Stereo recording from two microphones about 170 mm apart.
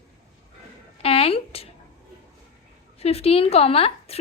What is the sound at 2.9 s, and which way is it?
A woman's voice, 35° left (ahead or behind).